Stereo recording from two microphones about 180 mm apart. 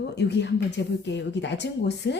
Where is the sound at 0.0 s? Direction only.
65° left (ahead or behind).